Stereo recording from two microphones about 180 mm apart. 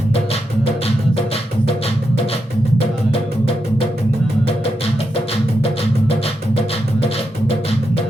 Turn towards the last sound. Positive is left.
turn(degrees=35)  # may be behind; listen again after turning